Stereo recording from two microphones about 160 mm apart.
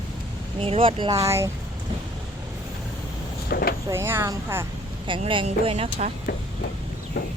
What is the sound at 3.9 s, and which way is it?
Speech, 15° right (ahead or behind).